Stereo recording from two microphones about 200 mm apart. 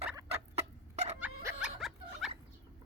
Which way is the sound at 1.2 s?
5° right (ahead or behind).